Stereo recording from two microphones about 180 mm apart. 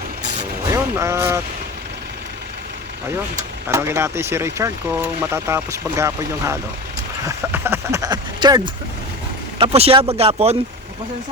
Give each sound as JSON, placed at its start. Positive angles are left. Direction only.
{"t": 0.7, "sound": "speech", "side_deg": -15}
{"t": 3.7, "sound": "speech", "side_deg": -15}